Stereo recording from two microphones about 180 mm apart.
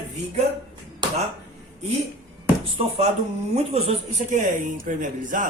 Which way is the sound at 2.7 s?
30° right (ahead or behind).